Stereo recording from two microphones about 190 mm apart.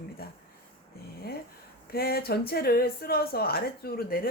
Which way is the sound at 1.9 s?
55° left (ahead or behind).